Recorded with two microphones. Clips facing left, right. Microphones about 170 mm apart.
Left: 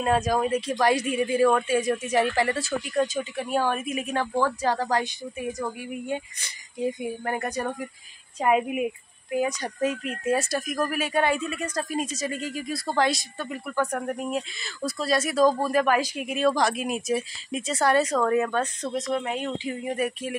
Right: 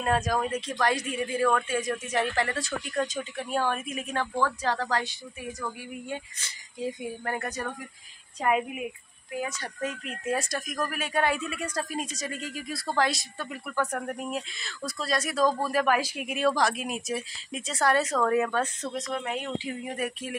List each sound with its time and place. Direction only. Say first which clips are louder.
0.0 s speech: left 3 dB; 5° left (ahead or behind)
12.0 s speech: left 5 dB; 5° left (ahead or behind)